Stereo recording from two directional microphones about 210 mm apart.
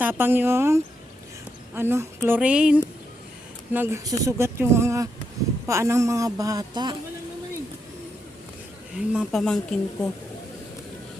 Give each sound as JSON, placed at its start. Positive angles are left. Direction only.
{"t": 0.0, "sound": "speech", "side_deg": -10}
{"t": 9.0, "sound": "speech", "side_deg": 0}